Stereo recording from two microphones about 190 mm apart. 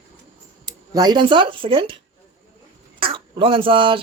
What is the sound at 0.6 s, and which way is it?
Speech, 20° right (ahead or behind).